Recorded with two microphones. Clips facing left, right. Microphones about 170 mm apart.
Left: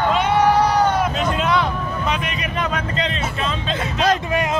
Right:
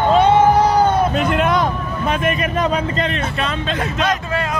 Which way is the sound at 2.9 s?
55° right (ahead or behind).